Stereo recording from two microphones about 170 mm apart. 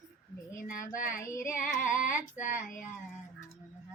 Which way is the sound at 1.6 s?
Centre (ahead or behind).